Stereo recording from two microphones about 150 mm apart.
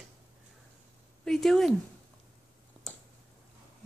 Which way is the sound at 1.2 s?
5° left (ahead or behind).